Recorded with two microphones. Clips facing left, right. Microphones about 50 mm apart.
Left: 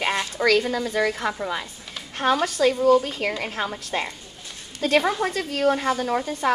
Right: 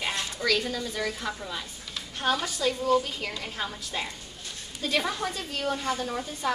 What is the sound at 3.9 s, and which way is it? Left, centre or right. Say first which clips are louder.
A woman's voice: left 6 dB; left.